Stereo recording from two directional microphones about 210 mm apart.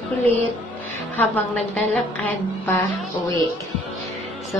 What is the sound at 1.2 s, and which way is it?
A woman's voice, 5° left (ahead or behind).